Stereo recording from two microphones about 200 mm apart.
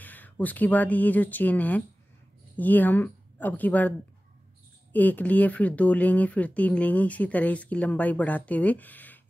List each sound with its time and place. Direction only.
0.0 s a woman's voice: 10° left (ahead or behind)
4.9 s speech: 10° left (ahead or behind)